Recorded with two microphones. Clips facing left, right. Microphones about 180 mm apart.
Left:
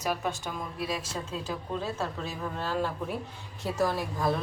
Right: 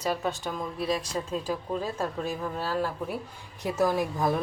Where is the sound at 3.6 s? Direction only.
15° right (ahead or behind).